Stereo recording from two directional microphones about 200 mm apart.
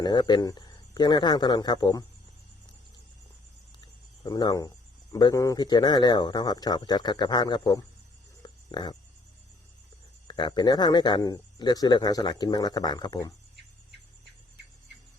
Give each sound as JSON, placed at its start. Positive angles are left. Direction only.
{"t": 0.0, "sound": "speech", "side_deg": 20}
{"t": 4.2, "sound": "speech", "side_deg": 20}
{"t": 8.4, "sound": "a sound", "side_deg": 20}
{"t": 10.2, "sound": "speech", "side_deg": 20}